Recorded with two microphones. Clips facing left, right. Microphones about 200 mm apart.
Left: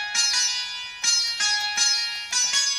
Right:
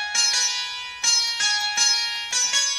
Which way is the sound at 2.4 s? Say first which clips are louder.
Right 3 dB; 60° right (ahead or behind).